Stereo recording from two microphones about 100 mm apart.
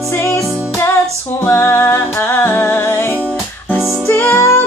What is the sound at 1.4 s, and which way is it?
Music, 25° left (ahead or behind).